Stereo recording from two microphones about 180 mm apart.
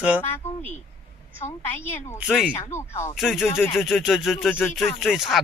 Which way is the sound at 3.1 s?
Centre (ahead or behind).